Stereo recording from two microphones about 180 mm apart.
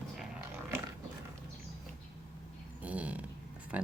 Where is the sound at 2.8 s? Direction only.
10° right (ahead or behind).